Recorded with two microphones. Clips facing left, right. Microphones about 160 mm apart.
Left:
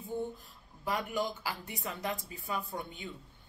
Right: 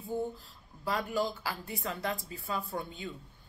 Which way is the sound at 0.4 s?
20° left (ahead or behind).